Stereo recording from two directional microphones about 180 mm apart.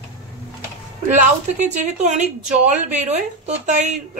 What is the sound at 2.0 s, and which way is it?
A woman's voice, 40° right (ahead or behind).